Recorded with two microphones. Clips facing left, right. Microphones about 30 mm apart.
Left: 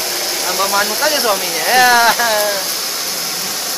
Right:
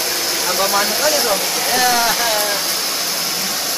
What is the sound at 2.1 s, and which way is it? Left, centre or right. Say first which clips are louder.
Hair dryer: left 3 dB; centre.